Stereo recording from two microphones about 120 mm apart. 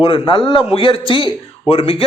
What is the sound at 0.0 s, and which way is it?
A man's voice, 45° left (ahead or behind).